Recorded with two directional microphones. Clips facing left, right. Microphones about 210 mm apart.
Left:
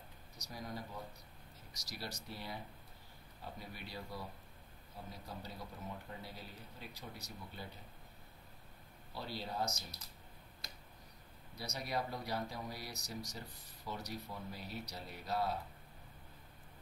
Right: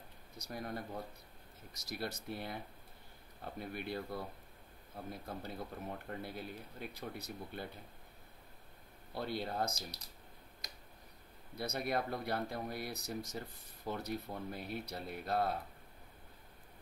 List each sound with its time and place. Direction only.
0.4 s speech: 60° right (ahead or behind)
1.9 s speech: 55° right (ahead or behind)
9.1 s speech: 55° right (ahead or behind)
11.5 s speech: 55° right (ahead or behind)